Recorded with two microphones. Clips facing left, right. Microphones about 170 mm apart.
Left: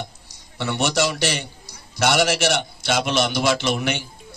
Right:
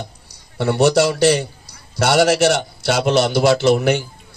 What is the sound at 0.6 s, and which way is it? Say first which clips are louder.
A man's voice: right 8 dB; 40° right (ahead or behind).